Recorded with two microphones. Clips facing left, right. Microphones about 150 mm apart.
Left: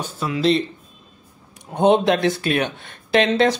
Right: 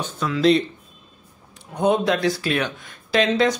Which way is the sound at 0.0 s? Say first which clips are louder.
Even; 10° left (ahead or behind).